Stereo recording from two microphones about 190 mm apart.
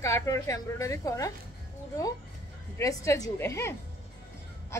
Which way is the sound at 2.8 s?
15° left (ahead or behind).